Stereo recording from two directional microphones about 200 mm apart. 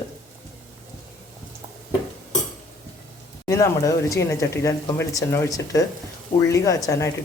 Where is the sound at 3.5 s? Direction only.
15° left (ahead or behind).